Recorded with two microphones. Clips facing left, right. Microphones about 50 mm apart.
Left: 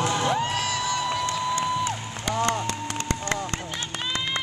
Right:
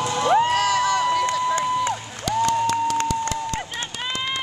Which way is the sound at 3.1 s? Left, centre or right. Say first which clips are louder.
Right 4 dB; left.